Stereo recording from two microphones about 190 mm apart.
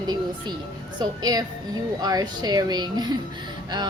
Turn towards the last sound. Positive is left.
turn(degrees=-25)  # may be behind; listen again after turning